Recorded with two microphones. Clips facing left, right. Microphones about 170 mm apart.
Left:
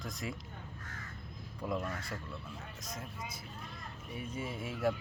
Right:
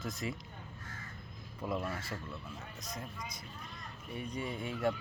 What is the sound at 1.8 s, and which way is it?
Speech, 25° right (ahead or behind).